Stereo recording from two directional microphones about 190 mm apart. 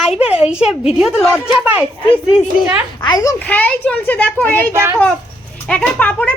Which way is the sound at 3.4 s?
10° left (ahead or behind).